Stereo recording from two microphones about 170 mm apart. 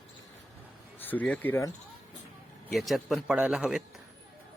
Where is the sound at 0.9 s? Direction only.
10° left (ahead or behind).